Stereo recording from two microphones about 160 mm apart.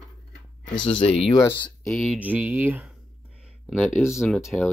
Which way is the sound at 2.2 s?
10° right (ahead or behind).